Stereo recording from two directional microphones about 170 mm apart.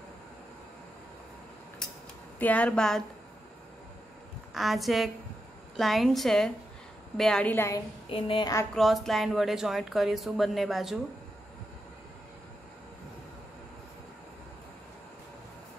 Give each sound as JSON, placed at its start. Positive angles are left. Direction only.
{"t": 2.3, "sound": "speech", "side_deg": 10}
{"t": 4.6, "sound": "speech", "side_deg": 0}
{"t": 8.1, "sound": "a woman's voice", "side_deg": 30}
{"t": 8.7, "sound": "speech", "side_deg": 0}